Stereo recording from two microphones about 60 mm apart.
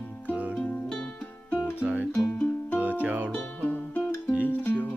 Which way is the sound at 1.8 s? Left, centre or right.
Right.